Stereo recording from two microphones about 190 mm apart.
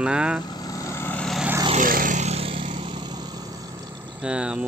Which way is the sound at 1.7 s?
45° right (ahead or behind).